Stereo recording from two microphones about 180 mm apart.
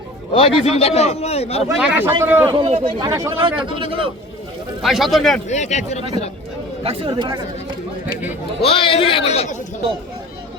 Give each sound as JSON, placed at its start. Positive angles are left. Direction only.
{"t": 0.3, "sound": "a man's voice", "side_deg": 30}
{"t": 1.8, "sound": "speech", "side_deg": -10}
{"t": 2.5, "sound": "a man's voice", "side_deg": -30}
{"t": 3.1, "sound": "speech", "side_deg": -15}
{"t": 3.3, "sound": "a man's voice", "side_deg": -30}
{"t": 4.8, "sound": "speech", "side_deg": 0}
{"t": 5.5, "sound": "a man's voice", "side_deg": 40}
{"t": 6.8, "sound": "a man's voice", "side_deg": -25}
{"t": 8.6, "sound": "a man's voice", "side_deg": 30}